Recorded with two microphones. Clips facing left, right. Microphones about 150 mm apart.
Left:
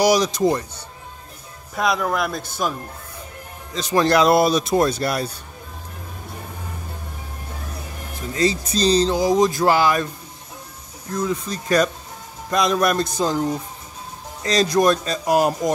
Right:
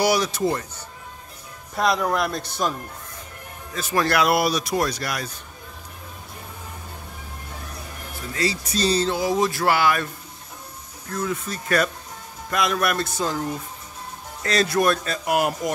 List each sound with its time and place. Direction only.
0.0 s speech: 15° left (ahead or behind)
1.8 s a man's voice: centre (ahead or behind)
3.7 s speech: 20° left (ahead or behind)
8.3 s speech: 20° left (ahead or behind)
11.1 s speech: 20° left (ahead or behind)
15.2 s speech: 35° left (ahead or behind)